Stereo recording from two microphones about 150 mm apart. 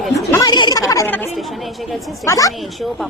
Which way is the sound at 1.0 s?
15° left (ahead or behind).